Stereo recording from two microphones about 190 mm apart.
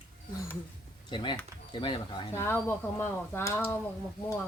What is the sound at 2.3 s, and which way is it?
Speech, 10° left (ahead or behind).